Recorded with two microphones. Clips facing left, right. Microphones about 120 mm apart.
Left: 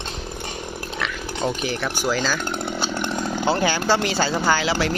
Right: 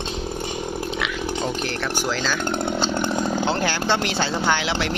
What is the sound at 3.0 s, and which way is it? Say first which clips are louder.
Chainsaw: right 3 dB; 15° right (ahead or behind).